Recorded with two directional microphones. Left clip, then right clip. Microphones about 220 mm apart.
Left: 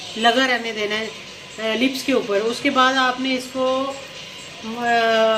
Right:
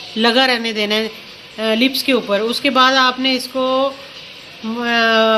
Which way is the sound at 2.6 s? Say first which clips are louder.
Right 5 dB; 45° right (ahead or behind).